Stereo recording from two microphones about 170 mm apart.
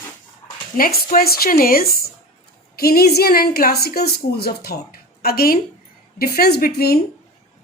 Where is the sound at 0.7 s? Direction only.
55° left (ahead or behind).